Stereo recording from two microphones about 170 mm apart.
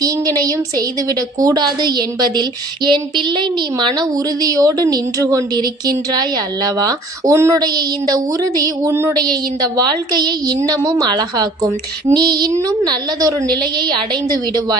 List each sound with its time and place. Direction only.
0.0 s a woman's voice: 20° right (ahead or behind)